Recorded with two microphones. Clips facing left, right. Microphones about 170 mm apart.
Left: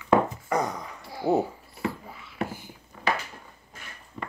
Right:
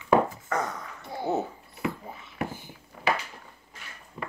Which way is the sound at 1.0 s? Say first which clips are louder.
Left 2 dB; 20° right (ahead or behind).